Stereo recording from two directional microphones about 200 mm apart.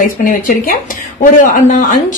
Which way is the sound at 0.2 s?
45° left (ahead or behind).